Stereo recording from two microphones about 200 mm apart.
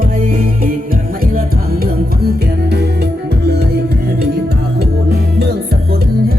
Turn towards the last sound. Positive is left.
turn(degrees=-55)  # may be behind; listen again after turning